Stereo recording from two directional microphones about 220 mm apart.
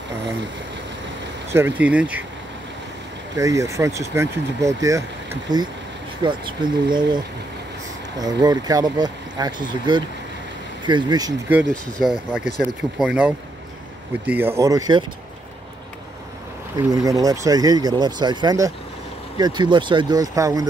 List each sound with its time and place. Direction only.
1.5 s speech: 10° right (ahead or behind)
3.3 s speech: 15° right (ahead or behind)
8.2 s speech: 20° right (ahead or behind)
11.7 s speech: centre (ahead or behind); by 15.0 s 20° right (ahead or behind)
16.7 s speech: 15° right (ahead or behind)